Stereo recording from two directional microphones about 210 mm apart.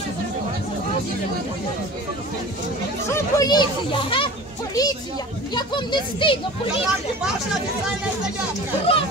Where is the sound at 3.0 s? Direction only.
15° left (ahead or behind).